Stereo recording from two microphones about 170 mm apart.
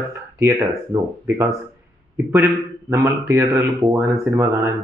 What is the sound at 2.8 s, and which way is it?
Speech, 15° right (ahead or behind).